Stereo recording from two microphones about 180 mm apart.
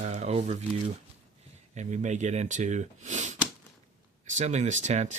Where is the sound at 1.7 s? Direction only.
40° right (ahead or behind).